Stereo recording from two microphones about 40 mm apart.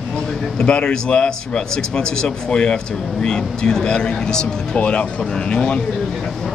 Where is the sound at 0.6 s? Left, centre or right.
Left.